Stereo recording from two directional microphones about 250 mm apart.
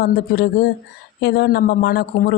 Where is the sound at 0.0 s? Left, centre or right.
Left.